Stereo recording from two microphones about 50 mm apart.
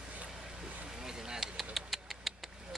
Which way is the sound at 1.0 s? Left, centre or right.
Centre.